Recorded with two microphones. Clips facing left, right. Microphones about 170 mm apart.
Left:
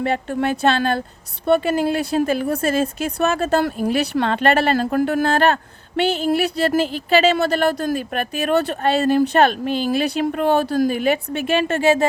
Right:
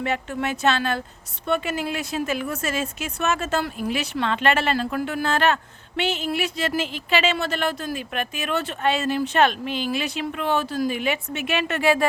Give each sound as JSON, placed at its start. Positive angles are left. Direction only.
{"t": 0.0, "sound": "speech", "side_deg": 35}